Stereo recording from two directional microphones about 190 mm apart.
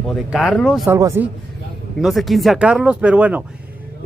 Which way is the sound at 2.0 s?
Centre (ahead or behind).